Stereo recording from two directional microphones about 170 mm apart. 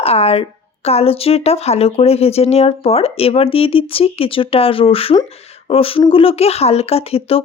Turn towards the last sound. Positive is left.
turn(degrees=35)  # may be behind; listen again after turning